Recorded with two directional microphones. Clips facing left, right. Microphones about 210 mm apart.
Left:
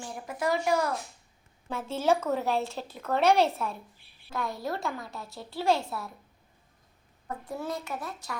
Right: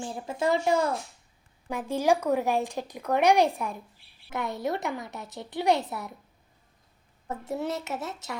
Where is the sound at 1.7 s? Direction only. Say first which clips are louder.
Right 2 dB; 15° right (ahead or behind).